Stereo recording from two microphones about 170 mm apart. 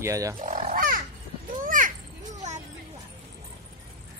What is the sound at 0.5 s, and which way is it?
Wild animals, 55° right (ahead or behind).